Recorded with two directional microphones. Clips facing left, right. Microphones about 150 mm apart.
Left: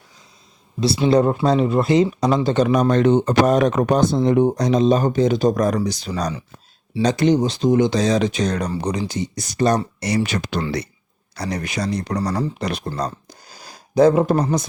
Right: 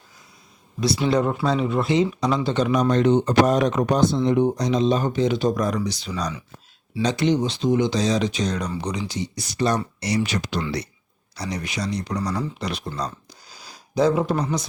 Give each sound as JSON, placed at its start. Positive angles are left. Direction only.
{"t": 0.8, "sound": "speech", "side_deg": 30}
{"t": 8.7, "sound": "speech", "side_deg": 40}